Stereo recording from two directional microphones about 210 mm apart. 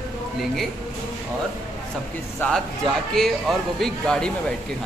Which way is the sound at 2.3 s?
5° left (ahead or behind).